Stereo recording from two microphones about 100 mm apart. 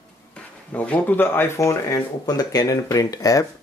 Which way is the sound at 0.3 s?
15° left (ahead or behind).